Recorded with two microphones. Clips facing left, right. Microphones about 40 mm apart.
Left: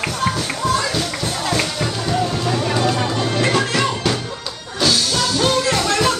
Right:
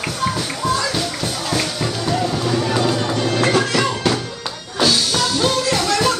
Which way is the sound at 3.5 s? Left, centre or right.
Centre.